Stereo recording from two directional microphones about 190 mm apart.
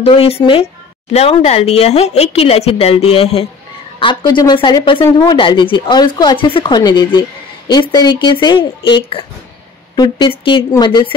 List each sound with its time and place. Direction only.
0.0 s speech: 30° left (ahead or behind)